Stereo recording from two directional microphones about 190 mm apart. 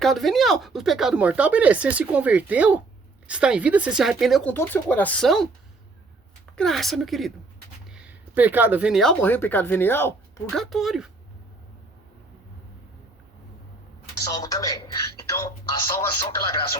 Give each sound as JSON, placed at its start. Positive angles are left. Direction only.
{"t": 0.0, "sound": "speech", "side_deg": 0}
{"t": 6.6, "sound": "speech", "side_deg": 0}
{"t": 14.3, "sound": "speech", "side_deg": 20}